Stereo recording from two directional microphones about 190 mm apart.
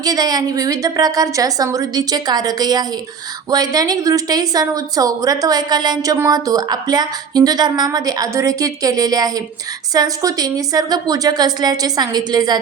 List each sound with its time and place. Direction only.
0.0 s a woman's voice: 20° right (ahead or behind)